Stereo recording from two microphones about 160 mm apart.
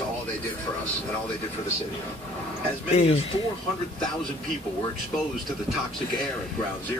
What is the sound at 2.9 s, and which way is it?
Speech, 40° left (ahead or behind).